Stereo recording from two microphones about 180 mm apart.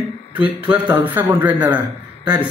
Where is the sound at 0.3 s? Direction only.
10° right (ahead or behind).